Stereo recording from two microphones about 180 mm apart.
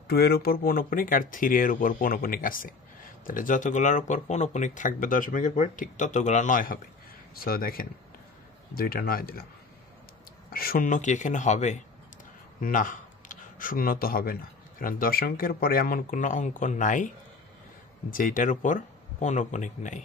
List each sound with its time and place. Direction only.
0.1 s speech: 60° left (ahead or behind)
10.5 s speech: 55° left (ahead or behind)
18.1 s speech: 50° left (ahead or behind)